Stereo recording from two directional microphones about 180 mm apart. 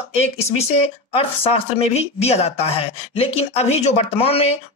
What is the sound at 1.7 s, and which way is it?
Speech, 35° left (ahead or behind).